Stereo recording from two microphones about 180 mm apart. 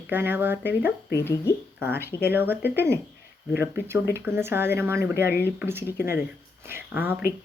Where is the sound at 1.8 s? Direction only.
10° right (ahead or behind).